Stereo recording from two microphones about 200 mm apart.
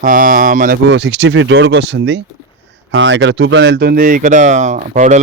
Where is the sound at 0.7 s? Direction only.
60° right (ahead or behind).